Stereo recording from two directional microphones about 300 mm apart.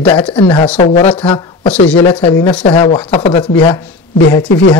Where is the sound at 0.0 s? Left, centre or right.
Centre.